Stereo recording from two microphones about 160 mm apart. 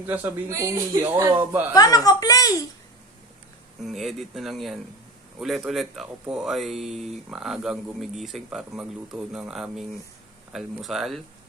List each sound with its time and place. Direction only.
0.0 s speech: 10° right (ahead or behind); by 1.5 s 30° right (ahead or behind)
1.7 s speech: 25° left (ahead or behind)
3.8 s speech: centre (ahead or behind)